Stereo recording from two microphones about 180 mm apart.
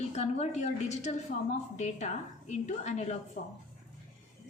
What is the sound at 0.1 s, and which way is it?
A woman's voice, 40° left (ahead or behind).